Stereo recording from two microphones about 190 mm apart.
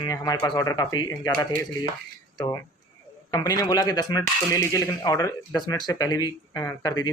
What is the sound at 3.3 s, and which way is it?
Speech, 20° left (ahead or behind).